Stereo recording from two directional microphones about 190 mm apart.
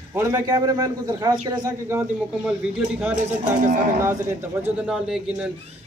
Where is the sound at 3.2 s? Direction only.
40° right (ahead or behind).